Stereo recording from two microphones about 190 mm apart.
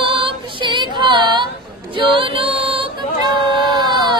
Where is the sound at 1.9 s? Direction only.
25° right (ahead or behind).